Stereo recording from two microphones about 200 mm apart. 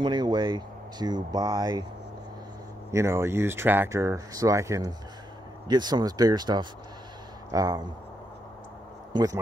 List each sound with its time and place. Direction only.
0.0 s speech: 20° right (ahead or behind)
2.9 s speech: 15° right (ahead or behind)
9.1 s speech: 20° right (ahead or behind)